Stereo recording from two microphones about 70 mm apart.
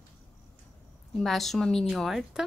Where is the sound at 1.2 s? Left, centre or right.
Centre.